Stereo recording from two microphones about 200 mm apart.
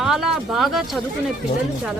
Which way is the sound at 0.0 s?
Centre (ahead or behind).